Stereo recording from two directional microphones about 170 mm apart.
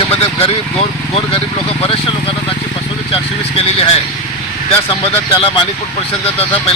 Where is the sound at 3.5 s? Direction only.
35° left (ahead or behind).